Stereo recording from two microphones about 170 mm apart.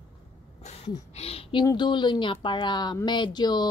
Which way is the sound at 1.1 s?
35° left (ahead or behind).